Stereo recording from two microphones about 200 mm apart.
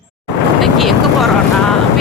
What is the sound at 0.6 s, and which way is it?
Vehicle, centre (ahead or behind).